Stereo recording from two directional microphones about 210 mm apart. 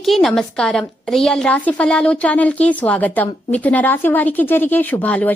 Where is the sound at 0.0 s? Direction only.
Centre (ahead or behind).